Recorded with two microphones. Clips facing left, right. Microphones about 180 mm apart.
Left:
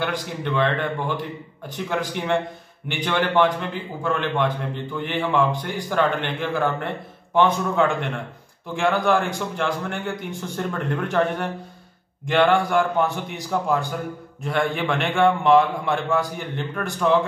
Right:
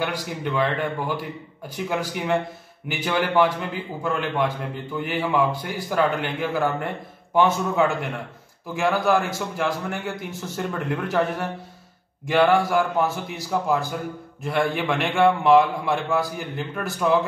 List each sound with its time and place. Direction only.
0.0 s a man's voice: 10° right (ahead or behind)